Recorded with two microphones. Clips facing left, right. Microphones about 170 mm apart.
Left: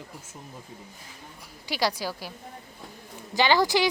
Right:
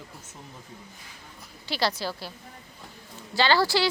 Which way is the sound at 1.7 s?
10° left (ahead or behind).